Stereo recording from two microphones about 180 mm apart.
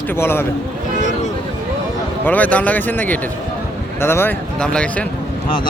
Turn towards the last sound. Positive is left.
turn(degrees=5)  # may be behind; listen again after turning